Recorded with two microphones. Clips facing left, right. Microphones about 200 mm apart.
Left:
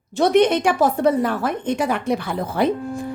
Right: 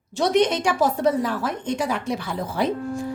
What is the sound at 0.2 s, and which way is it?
A woman's voice, 55° left (ahead or behind).